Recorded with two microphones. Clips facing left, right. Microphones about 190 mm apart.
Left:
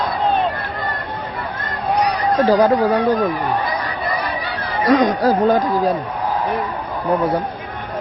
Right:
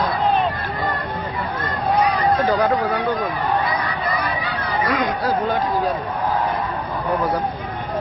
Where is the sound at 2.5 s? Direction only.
35° left (ahead or behind).